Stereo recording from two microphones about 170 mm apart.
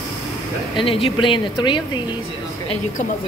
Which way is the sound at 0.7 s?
30° left (ahead or behind).